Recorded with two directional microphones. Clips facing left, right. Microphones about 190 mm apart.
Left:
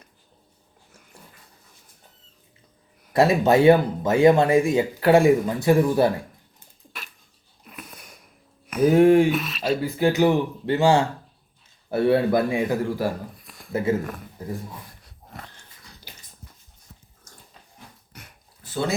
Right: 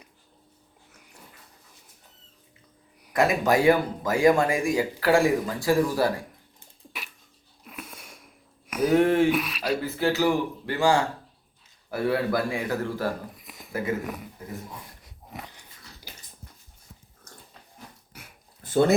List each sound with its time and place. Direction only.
3.1 s speech: 30° left (ahead or behind)
7.6 s a sound: 5° right (ahead or behind)
9.0 s speech: 15° left (ahead or behind)
9.3 s speech: 10° right (ahead or behind)
9.6 s speech: 15° left (ahead or behind)
13.4 s a sound: 20° right (ahead or behind)
14.4 s speech: 35° left (ahead or behind)
15.0 s dog: 15° right (ahead or behind)
18.1 s dog: 5° right (ahead or behind)
18.6 s a sound: 50° right (ahead or behind)